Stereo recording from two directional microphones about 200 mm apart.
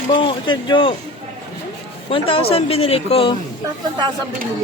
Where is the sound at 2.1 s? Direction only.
25° left (ahead or behind).